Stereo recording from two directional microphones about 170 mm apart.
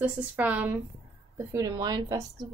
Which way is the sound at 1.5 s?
20° right (ahead or behind).